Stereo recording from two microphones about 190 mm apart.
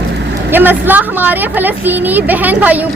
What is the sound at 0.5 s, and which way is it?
Speech, 10° right (ahead or behind).